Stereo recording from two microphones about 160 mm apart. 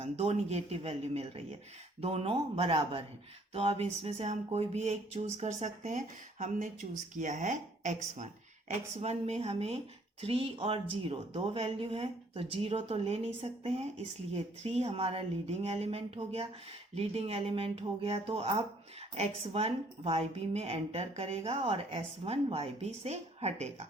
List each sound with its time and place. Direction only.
0.0 s speech: 40° right (ahead or behind)
7.2 s speech: 50° right (ahead or behind)
9.0 s speech: 40° right (ahead or behind)